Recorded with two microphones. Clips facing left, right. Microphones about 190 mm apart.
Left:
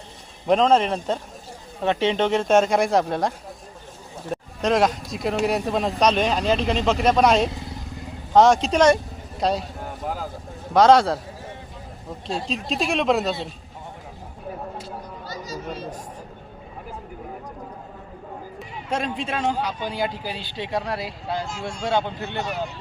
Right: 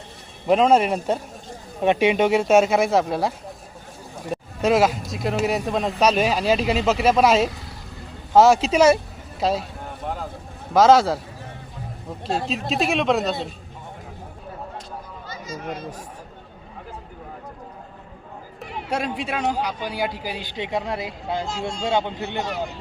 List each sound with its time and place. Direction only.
0.4 s a man's voice: 5° right (ahead or behind)
10.8 s speech: 5° right (ahead or behind)
12.5 s speech: 5° right (ahead or behind)
15.3 s chatter: 35° left (ahead or behind)
18.9 s a man's voice: 10° right (ahead or behind)